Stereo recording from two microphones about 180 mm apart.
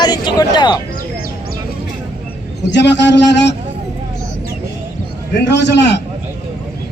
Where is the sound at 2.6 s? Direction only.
75° left (ahead or behind).